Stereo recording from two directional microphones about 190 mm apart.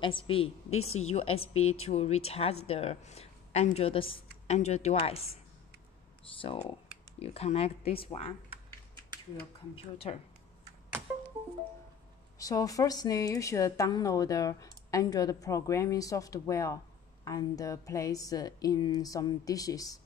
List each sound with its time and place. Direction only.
0.0 s a woman's voice: 25° left (ahead or behind)
0.7 s speech: 90° left
1.1 s a woman's voice: 30° left (ahead or behind)
6.4 s a woman's voice: 25° left (ahead or behind)
9.9 s a woman's voice: 30° left (ahead or behind)
12.4 s speech: 20° left (ahead or behind)